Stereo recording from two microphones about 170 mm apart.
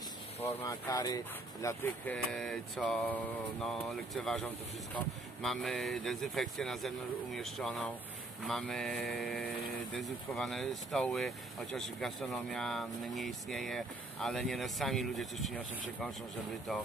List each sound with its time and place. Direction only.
0.5 s speech: 20° left (ahead or behind)
2.3 s speech: centre (ahead or behind)